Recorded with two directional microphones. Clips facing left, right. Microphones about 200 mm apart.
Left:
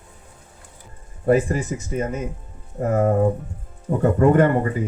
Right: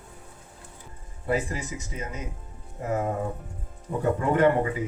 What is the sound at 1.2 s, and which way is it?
Speech, 55° left (ahead or behind).